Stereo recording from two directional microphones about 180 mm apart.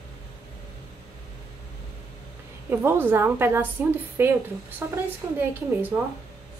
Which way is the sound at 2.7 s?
10° right (ahead or behind).